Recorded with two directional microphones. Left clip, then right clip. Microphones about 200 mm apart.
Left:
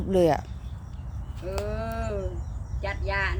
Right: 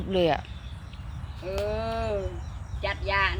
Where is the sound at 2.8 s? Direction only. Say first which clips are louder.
Right 3 dB; 40° left (ahead or behind).